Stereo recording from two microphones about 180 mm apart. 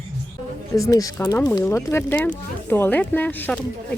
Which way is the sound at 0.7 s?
20° left (ahead or behind).